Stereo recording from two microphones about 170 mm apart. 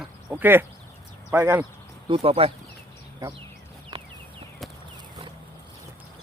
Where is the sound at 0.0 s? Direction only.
10° right (ahead or behind).